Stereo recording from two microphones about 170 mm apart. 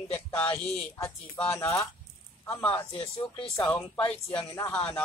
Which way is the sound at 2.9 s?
35° left (ahead or behind).